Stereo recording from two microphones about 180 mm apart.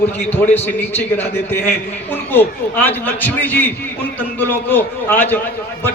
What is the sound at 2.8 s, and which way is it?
A man's voice, 10° left (ahead or behind).